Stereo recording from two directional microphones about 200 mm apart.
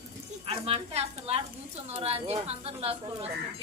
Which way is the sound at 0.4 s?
30° right (ahead or behind).